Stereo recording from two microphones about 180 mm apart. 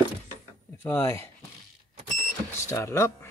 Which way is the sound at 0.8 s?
15° left (ahead or behind).